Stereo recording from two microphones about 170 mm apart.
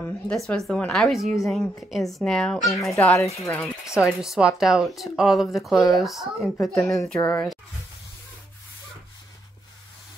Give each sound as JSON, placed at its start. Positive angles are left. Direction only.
{"t": 0.0, "sound": "a woman's voice", "side_deg": 5}
{"t": 2.9, "sound": "speech", "side_deg": 15}
{"t": 4.0, "sound": "a woman's voice", "side_deg": -5}